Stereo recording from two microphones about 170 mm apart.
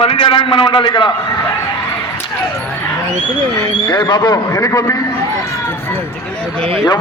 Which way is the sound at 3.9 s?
25° left (ahead or behind).